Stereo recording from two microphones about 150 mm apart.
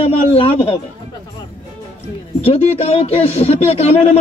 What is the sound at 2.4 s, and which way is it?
Speech, 40° left (ahead or behind).